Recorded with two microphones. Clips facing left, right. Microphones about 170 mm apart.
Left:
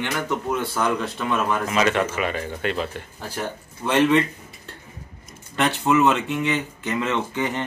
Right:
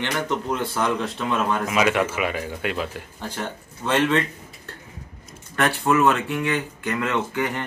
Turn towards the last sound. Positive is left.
turn(degrees=20)  # may be behind; listen again after turning